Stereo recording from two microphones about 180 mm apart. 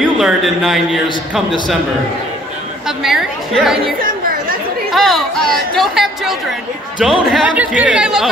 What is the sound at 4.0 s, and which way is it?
Chatter, 50° right (ahead or behind).